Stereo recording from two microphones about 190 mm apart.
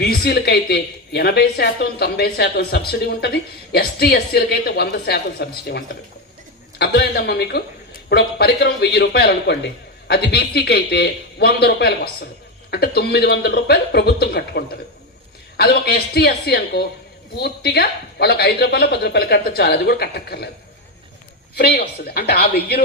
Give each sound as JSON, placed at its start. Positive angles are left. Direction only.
{"t": 0.0, "sound": "speech", "side_deg": 55}
{"t": 21.5, "sound": "speech", "side_deg": 55}